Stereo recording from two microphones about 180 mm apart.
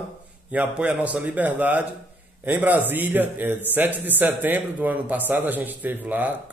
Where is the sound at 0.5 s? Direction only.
5° right (ahead or behind).